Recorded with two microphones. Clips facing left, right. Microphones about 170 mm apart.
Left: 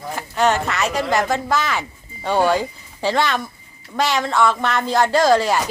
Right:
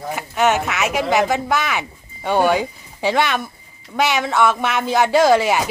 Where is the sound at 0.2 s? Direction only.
5° right (ahead or behind).